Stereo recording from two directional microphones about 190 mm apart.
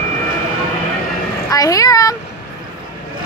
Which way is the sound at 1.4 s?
20° left (ahead or behind).